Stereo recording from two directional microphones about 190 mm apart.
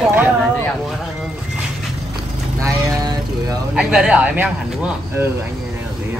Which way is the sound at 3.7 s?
5° right (ahead or behind).